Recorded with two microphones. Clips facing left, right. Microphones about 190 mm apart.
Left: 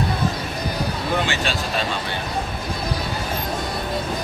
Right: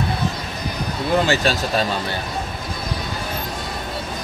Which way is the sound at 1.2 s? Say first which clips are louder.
Right 5 dB; 40° right (ahead or behind).